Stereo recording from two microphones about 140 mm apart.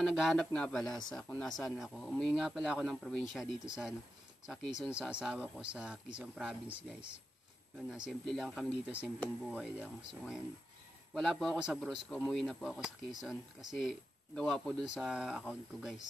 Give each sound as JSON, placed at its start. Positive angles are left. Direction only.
{"t": 0.0, "sound": "speech", "side_deg": 0}